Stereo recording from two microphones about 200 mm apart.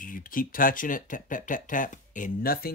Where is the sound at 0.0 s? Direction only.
45° left (ahead or behind).